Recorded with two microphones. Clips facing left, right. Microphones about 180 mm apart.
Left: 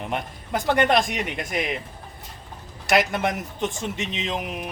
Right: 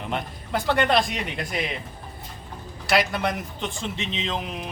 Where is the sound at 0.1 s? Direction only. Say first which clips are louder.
Right 1 dB; 15° left (ahead or behind).